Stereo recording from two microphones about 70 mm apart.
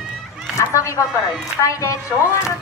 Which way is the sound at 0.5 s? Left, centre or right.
Left.